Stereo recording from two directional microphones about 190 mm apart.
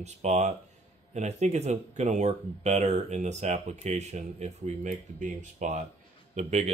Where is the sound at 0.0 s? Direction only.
35° right (ahead or behind).